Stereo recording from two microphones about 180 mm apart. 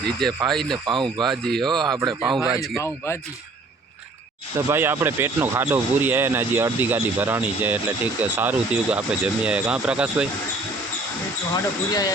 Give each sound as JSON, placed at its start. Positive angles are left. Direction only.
{"t": 0.0, "sound": "speech", "side_deg": 5}
{"t": 0.9, "sound": "speech", "side_deg": -25}
{"t": 1.2, "sound": "speech", "side_deg": 0}
{"t": 1.6, "sound": "speech", "side_deg": -25}
{"t": 2.0, "sound": "speech", "side_deg": 0}
{"t": 2.8, "sound": "speech", "side_deg": 15}
{"t": 4.5, "sound": "speech", "side_deg": -15}
{"t": 11.5, "sound": "speech", "side_deg": 20}